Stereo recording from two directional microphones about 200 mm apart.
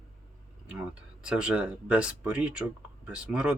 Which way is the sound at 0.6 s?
5° right (ahead or behind).